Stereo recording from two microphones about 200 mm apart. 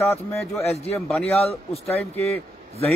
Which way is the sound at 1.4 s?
30° left (ahead or behind).